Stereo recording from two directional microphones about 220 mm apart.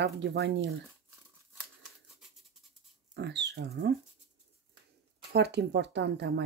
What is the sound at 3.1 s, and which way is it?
Speech, 50° right (ahead or behind).